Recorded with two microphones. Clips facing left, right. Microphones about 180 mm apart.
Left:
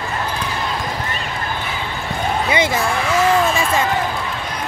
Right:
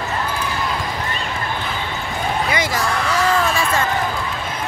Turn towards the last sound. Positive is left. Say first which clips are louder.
# left 3 dB
turn(degrees=25)  # may be behind; listen again after turning